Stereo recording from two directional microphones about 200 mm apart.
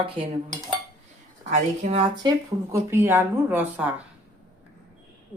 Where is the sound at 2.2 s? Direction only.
20° right (ahead or behind).